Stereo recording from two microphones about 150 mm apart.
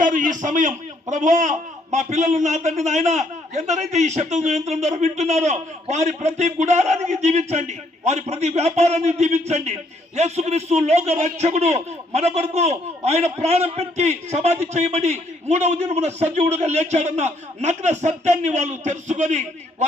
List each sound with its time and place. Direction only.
0.0 s a man's voice: 60° right (ahead or behind)